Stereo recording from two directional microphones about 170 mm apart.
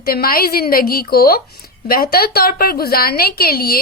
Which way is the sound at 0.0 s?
60° left (ahead or behind).